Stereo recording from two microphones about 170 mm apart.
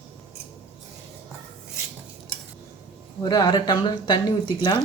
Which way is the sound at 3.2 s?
25° left (ahead or behind).